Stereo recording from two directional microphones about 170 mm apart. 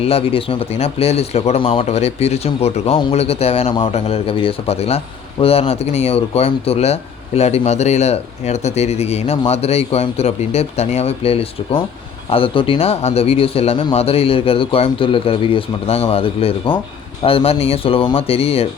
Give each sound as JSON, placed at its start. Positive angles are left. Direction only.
{"t": 0.0, "sound": "speech", "side_deg": 35}